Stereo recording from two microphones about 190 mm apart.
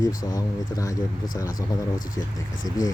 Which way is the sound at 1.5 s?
45° left (ahead or behind).